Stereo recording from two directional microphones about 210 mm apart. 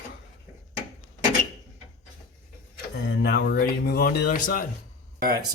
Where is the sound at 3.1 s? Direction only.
50° left (ahead or behind).